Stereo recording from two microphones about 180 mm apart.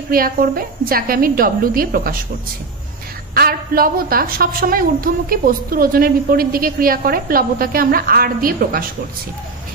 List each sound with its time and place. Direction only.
0.1 s a woman's voice: 55° right (ahead or behind)
3.3 s a woman's voice: 55° right (ahead or behind)